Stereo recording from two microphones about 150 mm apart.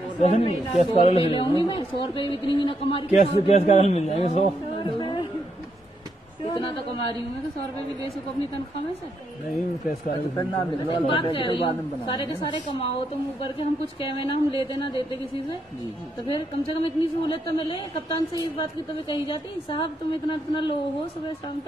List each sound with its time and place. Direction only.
0.2 s a woman's voice: 40° left (ahead or behind)
3.1 s a man's voice: 50° left (ahead or behind)
4.7 s a sound: 35° left (ahead or behind)
6.5 s a woman's voice: 35° left (ahead or behind)
10.3 s a woman's voice: 35° left (ahead or behind)
16.3 s a woman's voice: 35° left (ahead or behind)